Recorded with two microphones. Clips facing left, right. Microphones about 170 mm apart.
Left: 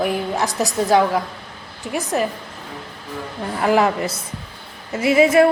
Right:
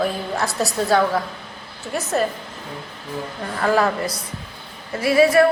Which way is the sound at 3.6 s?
15° left (ahead or behind).